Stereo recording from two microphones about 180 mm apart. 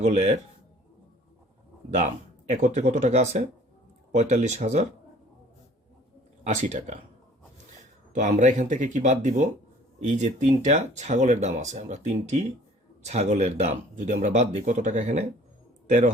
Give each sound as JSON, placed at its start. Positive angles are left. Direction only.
{"t": 0.0, "sound": "speech", "side_deg": -35}
{"t": 2.5, "sound": "speech", "side_deg": -40}
{"t": 6.4, "sound": "speech", "side_deg": -40}
{"t": 8.1, "sound": "speech", "side_deg": -40}